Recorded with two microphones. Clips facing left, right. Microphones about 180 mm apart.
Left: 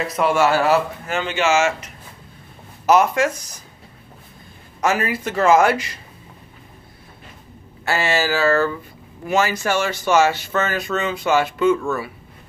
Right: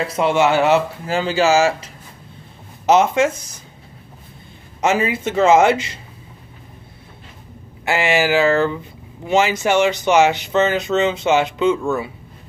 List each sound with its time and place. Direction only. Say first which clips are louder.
0.1 s speech: right 1 dB; 25° right (ahead or behind)
2.9 s speech: right 2 dB; 25° right (ahead or behind)
4.8 s speech: right 3 dB; 25° right (ahead or behind)
7.8 s speech: right 3 dB; 15° right (ahead or behind)